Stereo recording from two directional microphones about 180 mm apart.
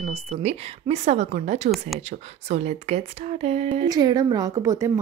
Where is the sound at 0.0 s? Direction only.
35° right (ahead or behind).